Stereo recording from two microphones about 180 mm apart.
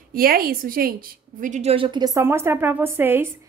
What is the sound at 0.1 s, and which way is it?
Speech, 55° right (ahead or behind).